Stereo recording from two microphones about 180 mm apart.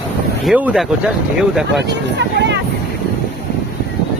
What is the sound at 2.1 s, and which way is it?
Speech, 75° right (ahead or behind).